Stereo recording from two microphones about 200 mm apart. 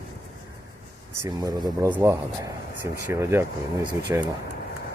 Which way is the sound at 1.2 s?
20° right (ahead or behind).